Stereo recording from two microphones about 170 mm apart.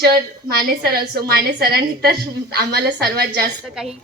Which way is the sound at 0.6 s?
65° right (ahead or behind).